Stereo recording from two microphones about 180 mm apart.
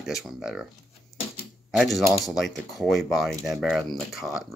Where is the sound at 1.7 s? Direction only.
Centre (ahead or behind).